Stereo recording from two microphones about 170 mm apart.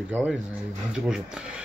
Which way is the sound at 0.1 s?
10° right (ahead or behind).